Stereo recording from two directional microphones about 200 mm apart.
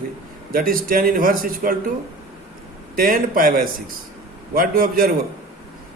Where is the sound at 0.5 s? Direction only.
45° right (ahead or behind).